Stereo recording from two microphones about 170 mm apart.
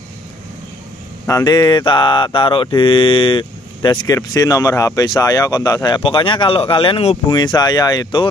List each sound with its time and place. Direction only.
1.2 s mantra: 20° left (ahead or behind)
7.2 s mantra: 25° left (ahead or behind)